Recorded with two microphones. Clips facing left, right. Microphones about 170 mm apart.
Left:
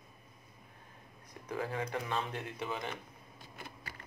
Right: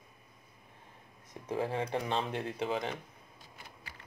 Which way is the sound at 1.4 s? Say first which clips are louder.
Right 4 dB; 25° right (ahead or behind).